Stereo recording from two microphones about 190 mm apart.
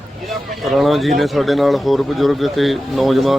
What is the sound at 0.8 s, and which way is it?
Speech, centre (ahead or behind).